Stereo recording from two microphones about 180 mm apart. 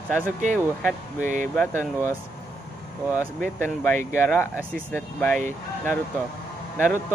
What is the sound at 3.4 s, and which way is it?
Speech, 10° left (ahead or behind).